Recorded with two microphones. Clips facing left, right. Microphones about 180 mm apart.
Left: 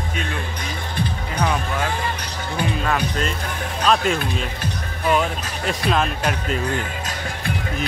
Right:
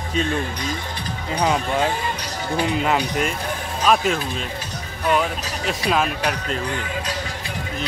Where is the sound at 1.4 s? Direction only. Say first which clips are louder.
Right 3 dB; 20° right (ahead or behind).